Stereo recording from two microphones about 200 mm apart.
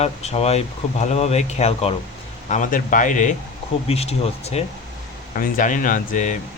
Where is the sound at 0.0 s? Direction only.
30° left (ahead or behind).